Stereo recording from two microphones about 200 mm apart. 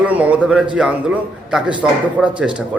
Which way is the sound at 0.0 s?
5° right (ahead or behind).